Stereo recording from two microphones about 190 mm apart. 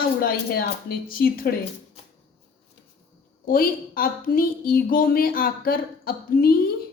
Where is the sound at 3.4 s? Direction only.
50° left (ahead or behind).